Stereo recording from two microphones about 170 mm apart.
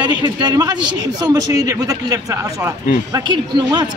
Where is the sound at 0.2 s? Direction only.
25° right (ahead or behind).